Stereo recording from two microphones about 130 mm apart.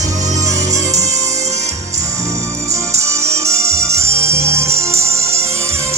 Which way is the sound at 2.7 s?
20° right (ahead or behind).